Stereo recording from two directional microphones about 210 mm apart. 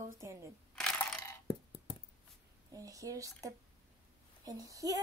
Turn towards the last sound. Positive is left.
turn(degrees=-15)  # may be behind; listen again after turning